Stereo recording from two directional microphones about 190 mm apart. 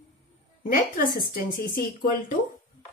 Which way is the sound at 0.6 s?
50° left (ahead or behind).